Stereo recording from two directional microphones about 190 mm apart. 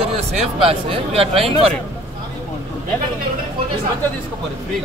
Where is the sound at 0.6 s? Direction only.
30° right (ahead or behind).